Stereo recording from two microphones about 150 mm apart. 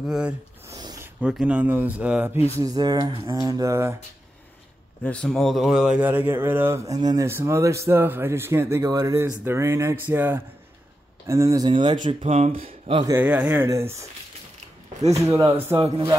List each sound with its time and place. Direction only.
0.0 s speech: 5° right (ahead or behind)
0.7 s a sound: 25° right (ahead or behind)
1.2 s speech: 10° right (ahead or behind)
2.6 s speech: 25° right (ahead or behind)
5.0 s speech: 5° left (ahead or behind); by 13.0 s 40° right (ahead or behind)
13.2 s speech: 10° right (ahead or behind)
15.2 s speech: 20° right (ahead or behind)